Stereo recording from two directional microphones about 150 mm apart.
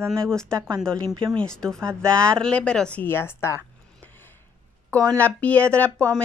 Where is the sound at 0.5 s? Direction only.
25° right (ahead or behind).